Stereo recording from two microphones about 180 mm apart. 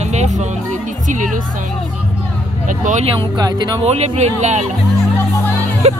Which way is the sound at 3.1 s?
25° right (ahead or behind).